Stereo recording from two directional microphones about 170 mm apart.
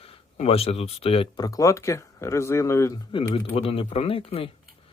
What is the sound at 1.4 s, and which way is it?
Speech, 20° left (ahead or behind).